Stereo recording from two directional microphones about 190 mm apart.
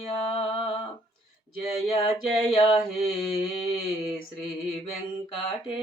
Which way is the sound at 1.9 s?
30° left (ahead or behind).